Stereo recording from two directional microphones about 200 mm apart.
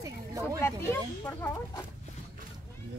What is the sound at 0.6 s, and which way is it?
Speech, 10° left (ahead or behind).